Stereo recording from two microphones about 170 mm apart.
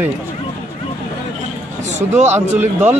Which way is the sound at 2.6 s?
10° right (ahead or behind).